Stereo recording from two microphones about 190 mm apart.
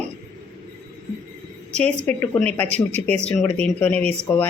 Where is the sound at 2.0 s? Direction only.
10° left (ahead or behind).